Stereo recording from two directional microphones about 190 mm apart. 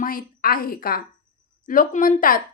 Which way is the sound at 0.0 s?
45° left (ahead or behind).